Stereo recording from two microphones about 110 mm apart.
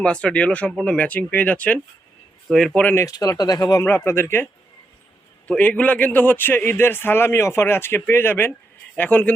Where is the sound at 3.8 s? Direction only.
25° left (ahead or behind).